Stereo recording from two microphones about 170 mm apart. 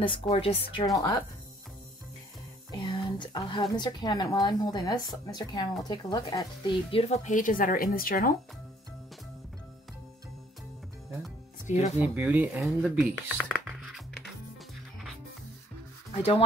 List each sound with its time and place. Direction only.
0.0 s speech: 30° left (ahead or behind)
2.7 s a woman's voice: 25° left (ahead or behind)
7.2 s speech: 50° left (ahead or behind)
11.6 s speech: 40° left (ahead or behind)
12.0 s speech: 10° right (ahead or behind)
16.2 s speech: 40° left (ahead or behind)